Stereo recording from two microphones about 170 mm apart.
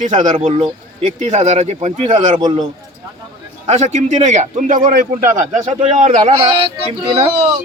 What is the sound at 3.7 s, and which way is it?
A man's voice, 45° right (ahead or behind).